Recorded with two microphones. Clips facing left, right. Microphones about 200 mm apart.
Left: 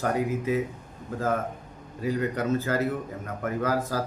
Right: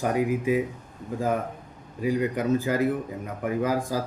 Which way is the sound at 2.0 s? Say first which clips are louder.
Right 2 dB; 15° right (ahead or behind).